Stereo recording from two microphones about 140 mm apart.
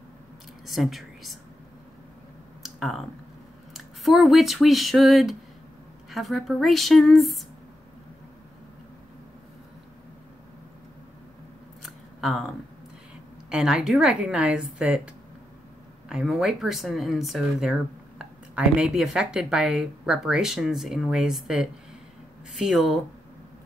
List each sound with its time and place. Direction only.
0.7 s a woman's voice: centre (ahead or behind)
2.6 s a sound: centre (ahead or behind)
3.7 s speech: centre (ahead or behind)
11.8 s scissors: centre (ahead or behind)
13.5 s a woman's voice: 5° right (ahead or behind)
16.1 s speech: 5° right (ahead or behind)